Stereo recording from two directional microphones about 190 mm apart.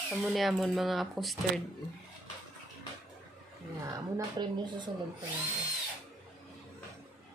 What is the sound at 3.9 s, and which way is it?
A woman's voice, 20° right (ahead or behind).